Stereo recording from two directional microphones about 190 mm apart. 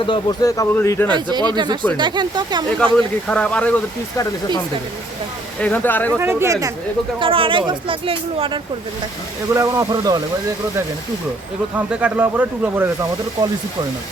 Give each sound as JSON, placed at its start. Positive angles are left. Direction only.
{"t": 0.0, "sound": "speech", "side_deg": 25}
{"t": 1.1, "sound": "speech", "side_deg": -20}
{"t": 2.9, "sound": "speech", "side_deg": 5}
{"t": 5.5, "sound": "speech", "side_deg": 10}
{"t": 6.1, "sound": "speech", "side_deg": -15}
{"t": 7.2, "sound": "speech", "side_deg": -30}
{"t": 11.9, "sound": "speech", "side_deg": -5}